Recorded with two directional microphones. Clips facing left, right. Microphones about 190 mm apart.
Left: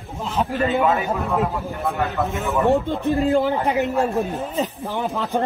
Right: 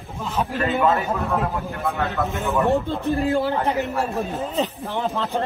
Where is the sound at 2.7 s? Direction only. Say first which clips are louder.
Left 2 dB; 15° left (ahead or behind).